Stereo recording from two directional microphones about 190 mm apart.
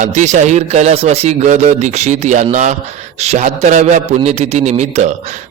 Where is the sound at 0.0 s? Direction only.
40° right (ahead or behind).